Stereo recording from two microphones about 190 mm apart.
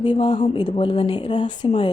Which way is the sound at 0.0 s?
25° left (ahead or behind).